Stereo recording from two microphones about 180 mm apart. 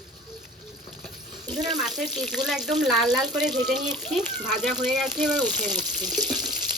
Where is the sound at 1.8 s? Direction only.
Centre (ahead or behind).